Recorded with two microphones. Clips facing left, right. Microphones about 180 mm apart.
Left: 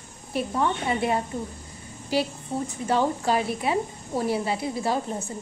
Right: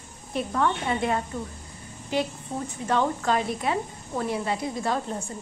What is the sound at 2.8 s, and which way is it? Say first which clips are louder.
A woman's voice: left 1 dB; 30° left (ahead or behind).